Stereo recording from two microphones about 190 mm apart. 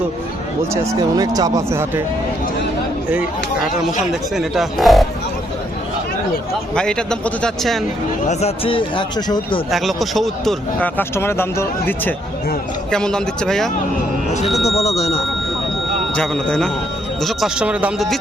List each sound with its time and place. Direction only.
0.7 s speech: 15° right (ahead or behind)
4.1 s a man's voice: centre (ahead or behind)
6.7 s a man's voice: 5° left (ahead or behind)
8.3 s speech: 35° left (ahead or behind)
9.7 s a man's voice: centre (ahead or behind)
14.7 s speech: 35° left (ahead or behind)
16.1 s a man's voice: 5° left (ahead or behind)